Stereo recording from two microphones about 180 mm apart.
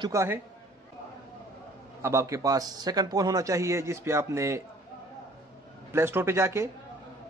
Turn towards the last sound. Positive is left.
turn(degrees=-15)  # may be behind; listen again after turning